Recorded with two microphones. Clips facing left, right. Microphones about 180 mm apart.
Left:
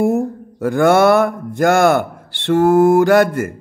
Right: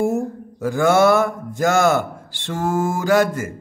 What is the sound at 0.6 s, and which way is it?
A man's voice, 60° left (ahead or behind).